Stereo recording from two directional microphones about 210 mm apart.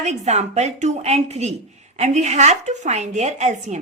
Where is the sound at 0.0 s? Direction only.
35° right (ahead or behind).